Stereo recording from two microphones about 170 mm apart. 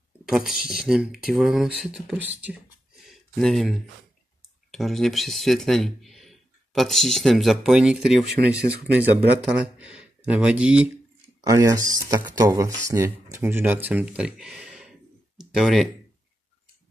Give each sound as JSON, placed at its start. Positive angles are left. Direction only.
{"t": 0.2, "sound": "speech", "side_deg": 0}
{"t": 3.3, "sound": "speech", "side_deg": 0}
{"t": 11.4, "sound": "speech", "side_deg": -20}